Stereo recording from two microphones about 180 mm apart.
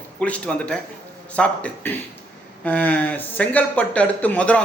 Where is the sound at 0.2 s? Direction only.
5° left (ahead or behind).